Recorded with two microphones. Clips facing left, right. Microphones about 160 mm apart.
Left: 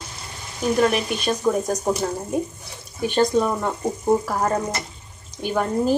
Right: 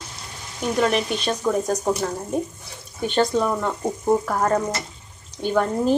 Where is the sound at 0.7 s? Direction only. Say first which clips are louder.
Even; 5° left (ahead or behind).